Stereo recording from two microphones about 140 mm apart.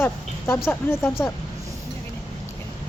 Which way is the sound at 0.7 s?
15° left (ahead or behind).